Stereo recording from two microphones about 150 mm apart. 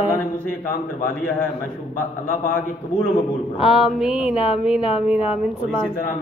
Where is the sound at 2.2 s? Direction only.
60° left (ahead or behind).